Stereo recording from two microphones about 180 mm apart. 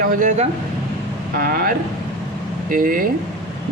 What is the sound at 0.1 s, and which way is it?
Speech, 45° right (ahead or behind).